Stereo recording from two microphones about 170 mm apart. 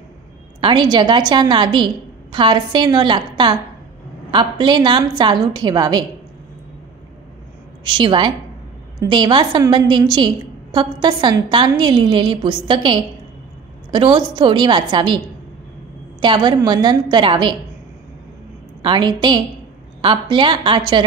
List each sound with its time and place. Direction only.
0.6 s a woman's voice: 30° right (ahead or behind)
7.8 s a woman's voice: 25° right (ahead or behind)
16.2 s a woman's voice: 25° right (ahead or behind)
18.8 s a woman's voice: 30° right (ahead or behind)